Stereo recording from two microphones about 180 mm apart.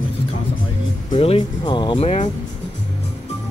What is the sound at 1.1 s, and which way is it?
Speech, 30° left (ahead or behind).